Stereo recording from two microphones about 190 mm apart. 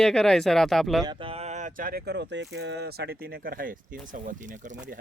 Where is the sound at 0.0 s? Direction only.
5° left (ahead or behind).